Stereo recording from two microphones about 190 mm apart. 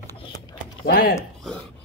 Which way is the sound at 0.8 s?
50° left (ahead or behind).